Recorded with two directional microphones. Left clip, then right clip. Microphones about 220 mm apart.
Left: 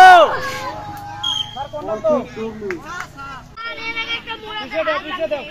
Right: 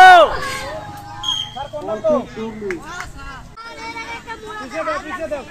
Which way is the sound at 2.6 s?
Centre (ahead or behind).